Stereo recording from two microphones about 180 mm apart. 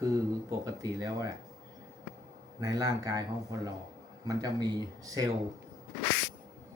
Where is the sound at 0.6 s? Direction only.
20° right (ahead or behind).